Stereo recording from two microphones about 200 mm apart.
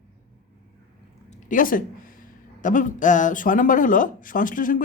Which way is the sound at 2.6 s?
40° left (ahead or behind).